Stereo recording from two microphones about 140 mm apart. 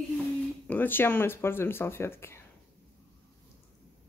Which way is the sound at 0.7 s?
15° left (ahead or behind).